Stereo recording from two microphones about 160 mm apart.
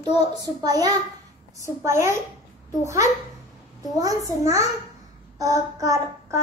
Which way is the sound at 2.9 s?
20° right (ahead or behind).